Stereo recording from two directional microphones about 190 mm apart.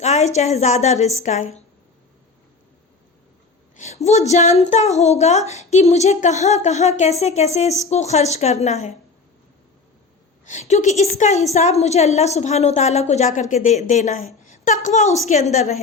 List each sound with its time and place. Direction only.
0.0 s a woman's voice: 35° left (ahead or behind)
3.8 s a woman's voice: 35° left (ahead or behind)
10.5 s a woman's voice: 40° left (ahead or behind)